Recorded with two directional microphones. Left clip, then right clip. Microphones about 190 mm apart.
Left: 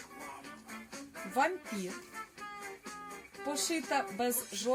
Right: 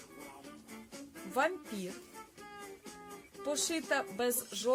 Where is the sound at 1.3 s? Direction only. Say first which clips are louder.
Left 1 dB; 15° right (ahead or behind).